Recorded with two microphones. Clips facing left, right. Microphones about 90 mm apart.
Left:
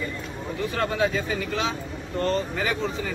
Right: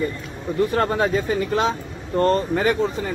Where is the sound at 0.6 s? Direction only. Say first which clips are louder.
Right 5 dB; 45° right (ahead or behind).